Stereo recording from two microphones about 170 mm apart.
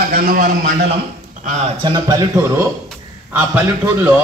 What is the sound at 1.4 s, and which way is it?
Speech, 40° right (ahead or behind).